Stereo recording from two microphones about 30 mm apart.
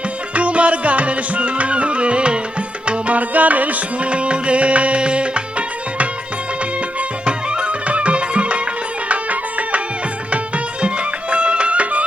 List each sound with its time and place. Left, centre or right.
0.3 s music: right
3.2 s music: right
4.1 s music: right
7.3 s music: right
9.0 s music: right
10.3 s music: right